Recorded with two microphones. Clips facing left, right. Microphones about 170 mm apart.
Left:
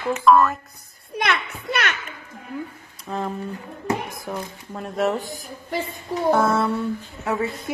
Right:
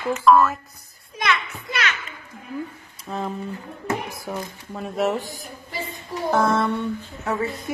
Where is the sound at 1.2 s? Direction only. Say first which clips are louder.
Left 1 dB; 60° left (ahead or behind).